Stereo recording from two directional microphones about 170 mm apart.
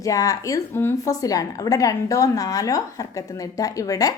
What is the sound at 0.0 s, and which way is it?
A woman's voice, 20° left (ahead or behind).